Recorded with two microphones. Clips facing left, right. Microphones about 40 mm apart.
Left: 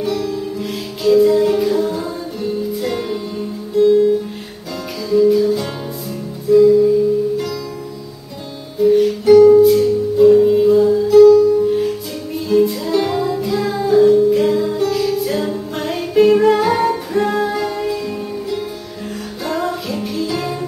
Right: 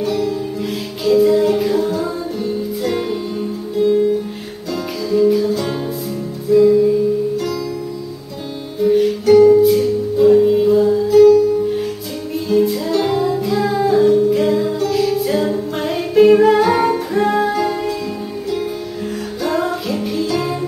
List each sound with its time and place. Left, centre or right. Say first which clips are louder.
0.0 s music: right 1 dB; centre
3.7 s music: left 3 dB; centre
5.1 s music: left 2 dB; centre
6.5 s music: left 1 dB; centre
8.7 s music: left 2 dB; centre
19.4 s music: right 2 dB; centre